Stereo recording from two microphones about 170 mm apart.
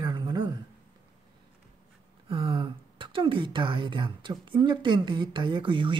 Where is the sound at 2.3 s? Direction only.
30° right (ahead or behind).